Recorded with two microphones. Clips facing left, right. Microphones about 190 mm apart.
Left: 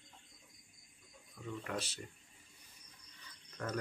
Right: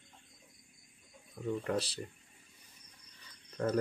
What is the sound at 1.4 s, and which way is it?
Speech, 35° right (ahead or behind).